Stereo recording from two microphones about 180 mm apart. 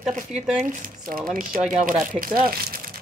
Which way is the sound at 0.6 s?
50° right (ahead or behind).